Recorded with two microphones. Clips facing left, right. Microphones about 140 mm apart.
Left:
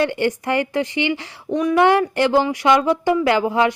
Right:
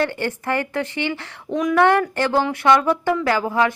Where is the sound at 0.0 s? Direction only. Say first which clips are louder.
Left 3 dB; 15° left (ahead or behind).